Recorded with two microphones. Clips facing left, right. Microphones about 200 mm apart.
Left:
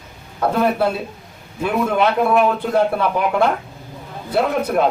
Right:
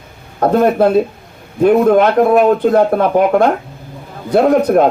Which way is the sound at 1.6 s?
50° right (ahead or behind).